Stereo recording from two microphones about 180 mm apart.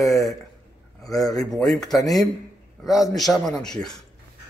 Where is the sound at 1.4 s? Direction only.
5° left (ahead or behind).